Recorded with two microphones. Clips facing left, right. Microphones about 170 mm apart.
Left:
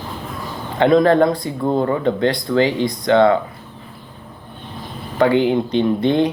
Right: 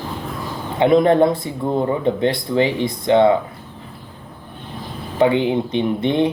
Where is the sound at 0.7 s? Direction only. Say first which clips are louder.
Even; 20° right (ahead or behind).